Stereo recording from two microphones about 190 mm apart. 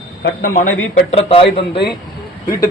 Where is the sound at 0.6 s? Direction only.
35° left (ahead or behind).